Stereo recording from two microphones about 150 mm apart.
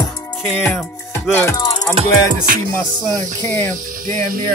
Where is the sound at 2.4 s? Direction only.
70° right (ahead or behind).